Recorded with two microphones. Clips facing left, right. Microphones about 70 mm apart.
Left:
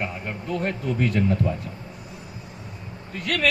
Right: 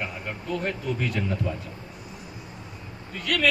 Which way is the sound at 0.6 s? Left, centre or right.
Left.